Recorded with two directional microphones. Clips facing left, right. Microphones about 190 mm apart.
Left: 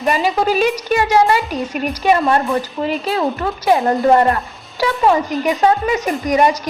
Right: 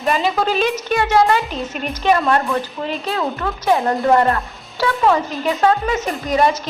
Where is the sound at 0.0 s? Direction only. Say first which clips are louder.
Left 2 dB; 10° left (ahead or behind).